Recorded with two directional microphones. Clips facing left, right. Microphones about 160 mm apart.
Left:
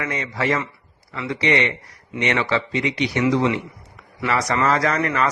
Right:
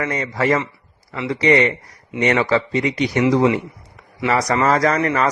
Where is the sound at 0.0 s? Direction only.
40° right (ahead or behind).